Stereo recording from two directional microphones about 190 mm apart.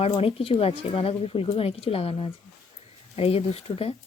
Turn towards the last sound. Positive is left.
turn(degrees=30)  # may be behind; listen again after turning